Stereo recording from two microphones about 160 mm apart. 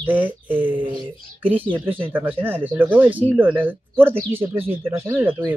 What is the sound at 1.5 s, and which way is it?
Speech, 10° right (ahead or behind).